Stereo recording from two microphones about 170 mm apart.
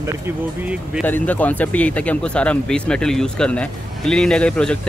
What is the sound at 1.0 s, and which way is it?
Speech, 10° left (ahead or behind).